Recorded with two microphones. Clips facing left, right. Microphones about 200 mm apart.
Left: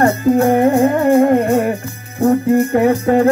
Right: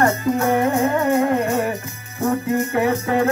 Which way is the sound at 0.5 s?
35° left (ahead or behind).